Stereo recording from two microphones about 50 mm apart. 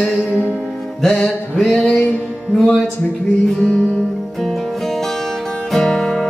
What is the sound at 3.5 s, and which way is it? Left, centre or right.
Music, centre.